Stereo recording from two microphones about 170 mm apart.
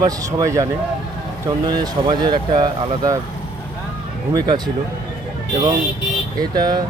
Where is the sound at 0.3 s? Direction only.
20° right (ahead or behind).